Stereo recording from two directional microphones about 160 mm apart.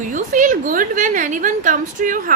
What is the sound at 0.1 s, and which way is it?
A woman's voice, 55° right (ahead or behind).